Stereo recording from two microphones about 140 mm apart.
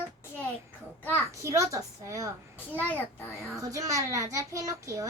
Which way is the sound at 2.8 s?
10° left (ahead or behind).